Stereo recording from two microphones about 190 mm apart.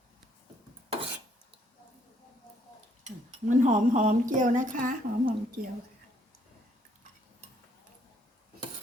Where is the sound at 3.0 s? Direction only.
40° right (ahead or behind).